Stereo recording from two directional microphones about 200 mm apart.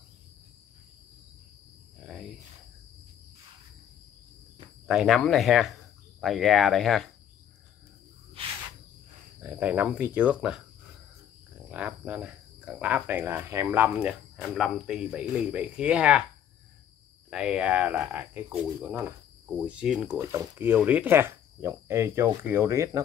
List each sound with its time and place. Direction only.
4.8 s speech: centre (ahead or behind)
8.4 s cricket: 30° right (ahead or behind)
9.4 s speech: 10° right (ahead or behind)
11.7 s speech: 5° right (ahead or behind)
17.3 s speech: 5° right (ahead or behind)
18.9 s cricket: 10° right (ahead or behind)
19.5 s speech: 5° right (ahead or behind)